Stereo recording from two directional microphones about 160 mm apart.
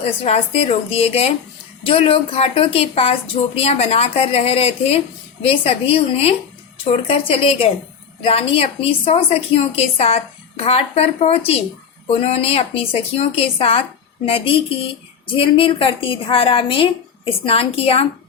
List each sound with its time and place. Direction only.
0.0 s a woman's voice: 40° left (ahead or behind)